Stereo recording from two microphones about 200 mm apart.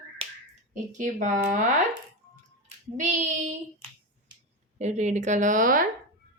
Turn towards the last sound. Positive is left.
turn(degrees=-45)  # may be behind; listen again after turning